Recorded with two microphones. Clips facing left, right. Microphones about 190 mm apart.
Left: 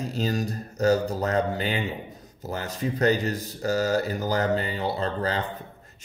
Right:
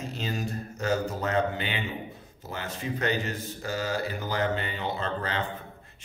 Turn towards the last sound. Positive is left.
turn(degrees=35)  # may be behind; listen again after turning